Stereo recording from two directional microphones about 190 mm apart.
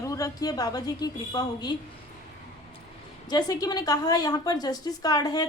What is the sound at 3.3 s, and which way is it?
A woman's voice, 20° left (ahead or behind).